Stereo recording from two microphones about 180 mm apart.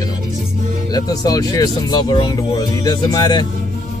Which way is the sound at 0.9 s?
20° left (ahead or behind).